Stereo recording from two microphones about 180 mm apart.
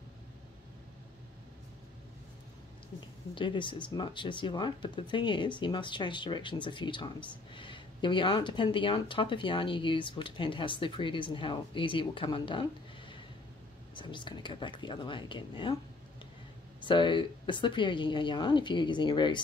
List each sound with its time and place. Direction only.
3.3 s speech: 25° left (ahead or behind)
13.9 s speech: 25° left (ahead or behind)
16.8 s speech: 25° left (ahead or behind)